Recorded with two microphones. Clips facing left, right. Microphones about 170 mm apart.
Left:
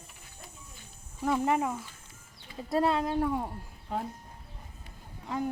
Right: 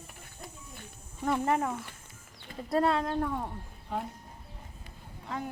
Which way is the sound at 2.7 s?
Centre (ahead or behind).